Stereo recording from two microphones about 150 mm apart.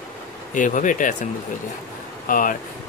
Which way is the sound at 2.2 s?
65° left (ahead or behind).